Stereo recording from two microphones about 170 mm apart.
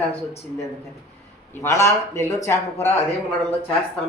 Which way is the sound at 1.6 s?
15° left (ahead or behind).